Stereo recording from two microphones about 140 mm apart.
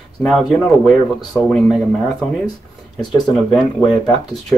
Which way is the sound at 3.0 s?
30° left (ahead or behind).